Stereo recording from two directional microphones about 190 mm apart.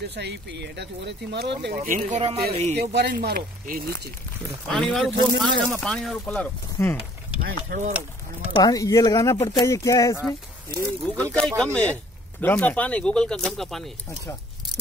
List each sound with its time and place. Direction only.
0.1 s speech: 65° right (ahead or behind)
1.9 s speech: 40° right (ahead or behind)
2.8 s speech: 60° right (ahead or behind)
4.6 s speech: 5° left (ahead or behind)
8.5 s speech: 20° left (ahead or behind); by 13.9 s centre (ahead or behind)